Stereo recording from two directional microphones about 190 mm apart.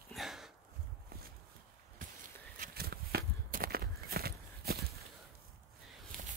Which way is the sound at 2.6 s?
55° right (ahead or behind).